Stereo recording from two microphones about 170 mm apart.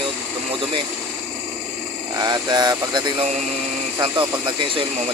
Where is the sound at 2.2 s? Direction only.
25° right (ahead or behind).